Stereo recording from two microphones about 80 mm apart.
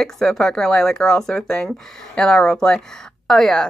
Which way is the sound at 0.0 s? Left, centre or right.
Centre.